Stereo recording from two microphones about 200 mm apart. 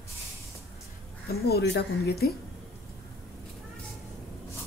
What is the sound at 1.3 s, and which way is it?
Speech, 50° left (ahead or behind).